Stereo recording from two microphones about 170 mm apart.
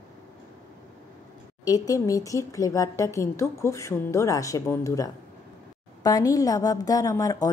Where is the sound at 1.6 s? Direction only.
20° left (ahead or behind).